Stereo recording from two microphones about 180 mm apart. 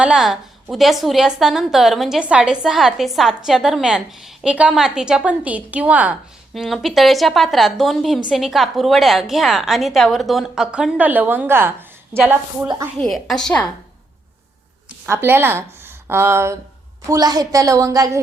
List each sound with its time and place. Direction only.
0.0 s a woman's voice: 5° right (ahead or behind)
13.0 s a woman's voice: centre (ahead or behind)
15.0 s a woman's voice: 15° right (ahead or behind)